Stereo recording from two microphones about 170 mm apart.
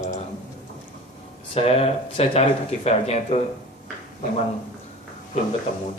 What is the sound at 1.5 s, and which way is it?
A man's voice, 35° left (ahead or behind).